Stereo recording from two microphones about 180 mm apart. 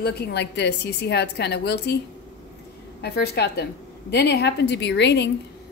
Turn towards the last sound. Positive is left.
turn(degrees=75)  # may be behind; listen again after turning